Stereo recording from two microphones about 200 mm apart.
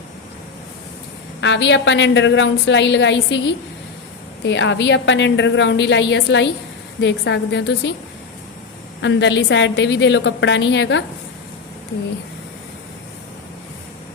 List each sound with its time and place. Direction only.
1.4 s a woman's voice: 65° left (ahead or behind)
4.4 s a woman's voice: 65° left (ahead or behind)
9.0 s a woman's voice: 65° left (ahead or behind)